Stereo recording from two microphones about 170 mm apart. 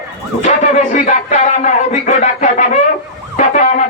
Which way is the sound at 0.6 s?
45° left (ahead or behind).